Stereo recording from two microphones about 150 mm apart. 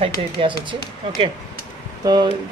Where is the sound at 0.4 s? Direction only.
35° right (ahead or behind).